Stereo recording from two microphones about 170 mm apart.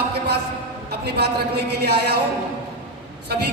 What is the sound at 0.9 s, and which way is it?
A woman's voice, 70° right (ahead or behind).